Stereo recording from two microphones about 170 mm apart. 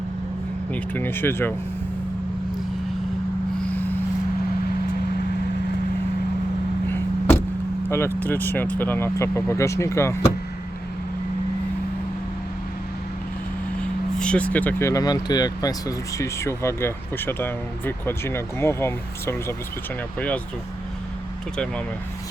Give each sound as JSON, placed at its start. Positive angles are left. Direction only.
{"t": 0.7, "sound": "speech", "side_deg": 10}
{"t": 3.7, "sound": "a sound", "side_deg": 10}
{"t": 6.9, "sound": "vehicle", "side_deg": 15}
{"t": 7.9, "sound": "speech", "side_deg": 15}
{"t": 14.2, "sound": "speech", "side_deg": 5}
{"t": 21.5, "sound": "speech", "side_deg": 5}